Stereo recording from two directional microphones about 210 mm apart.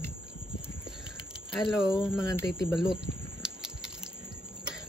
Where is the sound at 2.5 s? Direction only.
Centre (ahead or behind).